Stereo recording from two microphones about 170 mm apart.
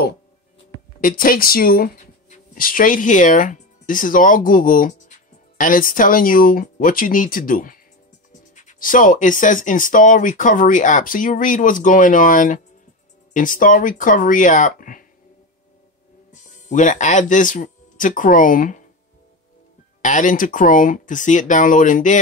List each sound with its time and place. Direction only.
1.0 s speech: 55° left (ahead or behind)
16.3 s speech: 45° left (ahead or behind)
20.0 s speech: 50° left (ahead or behind)